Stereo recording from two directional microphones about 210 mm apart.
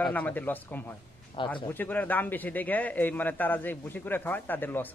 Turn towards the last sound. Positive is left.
turn(degrees=10)  # may be behind; listen again after turning